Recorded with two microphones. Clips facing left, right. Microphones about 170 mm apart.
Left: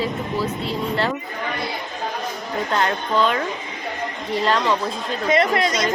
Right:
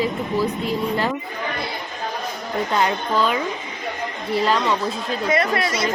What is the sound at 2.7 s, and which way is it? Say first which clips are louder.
Speech: even; 10° right (ahead or behind).